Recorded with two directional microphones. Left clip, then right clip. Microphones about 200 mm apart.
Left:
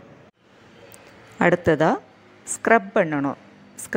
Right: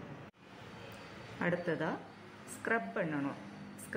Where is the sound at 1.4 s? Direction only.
45° left (ahead or behind).